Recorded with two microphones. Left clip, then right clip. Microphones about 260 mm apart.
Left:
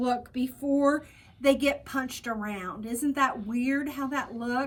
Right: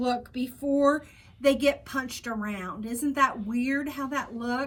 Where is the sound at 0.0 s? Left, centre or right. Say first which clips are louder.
Even; centre.